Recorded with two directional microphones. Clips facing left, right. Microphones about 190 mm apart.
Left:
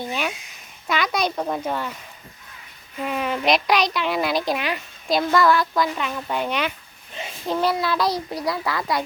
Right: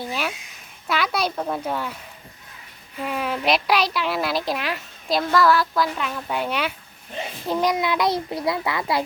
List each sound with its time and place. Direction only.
0.0 s a child's voice: 5° right (ahead or behind)
3.0 s a child's voice: 5° right (ahead or behind); by 8.8 s 20° right (ahead or behind)